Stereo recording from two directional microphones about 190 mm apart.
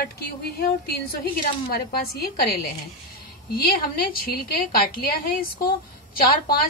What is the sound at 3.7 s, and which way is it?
A woman's voice, 50° left (ahead or behind).